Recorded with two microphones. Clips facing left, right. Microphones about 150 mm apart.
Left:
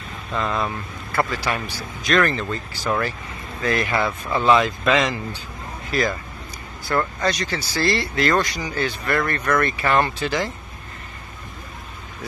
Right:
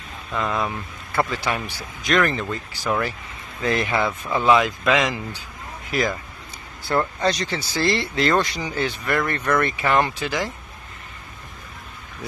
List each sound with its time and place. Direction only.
0.3 s speech: 5° right (ahead or behind)